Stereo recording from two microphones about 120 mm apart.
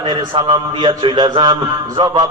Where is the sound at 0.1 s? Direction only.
35° right (ahead or behind).